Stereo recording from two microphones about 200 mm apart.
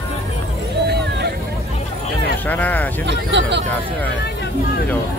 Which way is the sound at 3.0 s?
60° right (ahead or behind).